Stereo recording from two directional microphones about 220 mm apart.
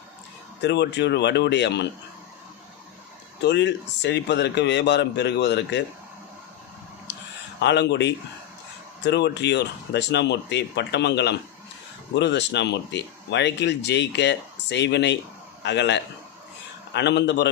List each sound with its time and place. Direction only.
0.6 s speech: 50° left (ahead or behind)
3.4 s speech: 50° left (ahead or behind)
7.1 s a sound: 50° left (ahead or behind)
7.6 s speech: 50° left (ahead or behind)